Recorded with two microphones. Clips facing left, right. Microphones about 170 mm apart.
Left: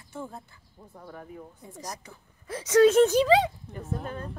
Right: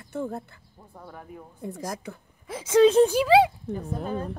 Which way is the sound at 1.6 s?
60° right (ahead or behind).